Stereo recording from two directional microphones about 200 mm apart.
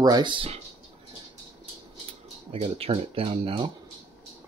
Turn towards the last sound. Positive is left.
turn(degrees=-25)  # may be behind; listen again after turning